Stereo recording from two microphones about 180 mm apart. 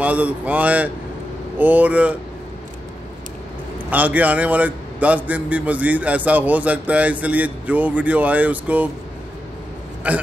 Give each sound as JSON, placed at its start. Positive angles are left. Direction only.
{"t": 0.0, "sound": "a man's voice", "side_deg": -10}
{"t": 3.9, "sound": "a man's voice", "side_deg": -10}
{"t": 10.1, "sound": "a man's voice", "side_deg": -5}